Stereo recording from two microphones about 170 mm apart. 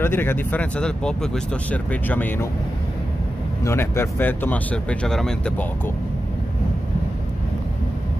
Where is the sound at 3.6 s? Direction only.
15° left (ahead or behind).